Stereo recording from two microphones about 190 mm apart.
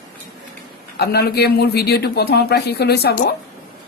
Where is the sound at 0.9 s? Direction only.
55° left (ahead or behind).